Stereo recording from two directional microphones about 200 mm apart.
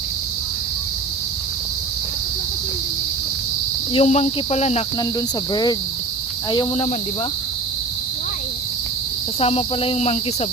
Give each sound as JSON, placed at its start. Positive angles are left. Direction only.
{"t": 3.9, "sound": "speech", "side_deg": 35}
{"t": 5.5, "sound": "speech", "side_deg": 20}
{"t": 9.4, "sound": "speech", "side_deg": 30}